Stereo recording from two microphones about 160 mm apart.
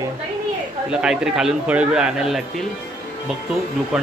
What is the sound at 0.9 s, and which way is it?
A man's voice, 5° right (ahead or behind).